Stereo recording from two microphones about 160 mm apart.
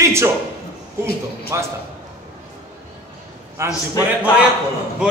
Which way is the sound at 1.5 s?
20° right (ahead or behind).